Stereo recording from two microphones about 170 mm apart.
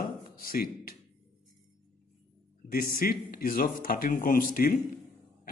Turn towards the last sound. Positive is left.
turn(degrees=55)  # may be behind; listen again after turning